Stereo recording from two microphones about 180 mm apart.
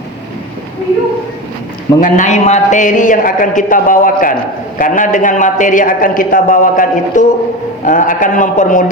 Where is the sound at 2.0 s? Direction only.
45° left (ahead or behind).